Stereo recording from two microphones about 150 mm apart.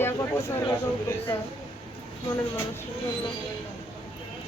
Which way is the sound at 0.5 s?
20° left (ahead or behind).